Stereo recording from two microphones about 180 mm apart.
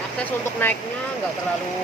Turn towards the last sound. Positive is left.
turn(degrees=10)  # may be behind; listen again after turning